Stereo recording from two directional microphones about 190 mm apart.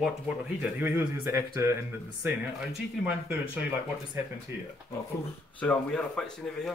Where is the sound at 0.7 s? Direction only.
10° right (ahead or behind).